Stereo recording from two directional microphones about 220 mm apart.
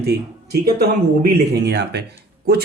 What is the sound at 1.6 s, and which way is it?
Speech, 50° right (ahead or behind).